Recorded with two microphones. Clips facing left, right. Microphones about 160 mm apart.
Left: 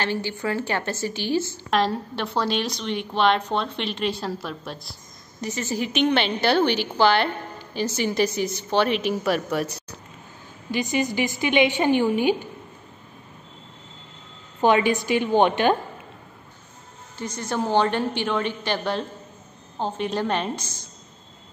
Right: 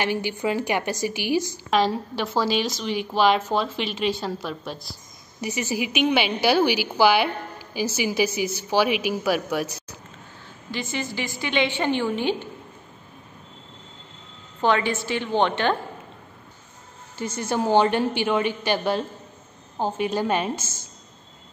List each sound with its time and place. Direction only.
0.0 s a woman's voice: 15° right (ahead or behind)
1.7 s a woman's voice: centre (ahead or behind)
5.4 s a woman's voice: 10° right (ahead or behind)
10.7 s a woman's voice: 15° left (ahead or behind)
14.6 s a woman's voice: 15° left (ahead or behind)
17.2 s a woman's voice: 5° right (ahead or behind)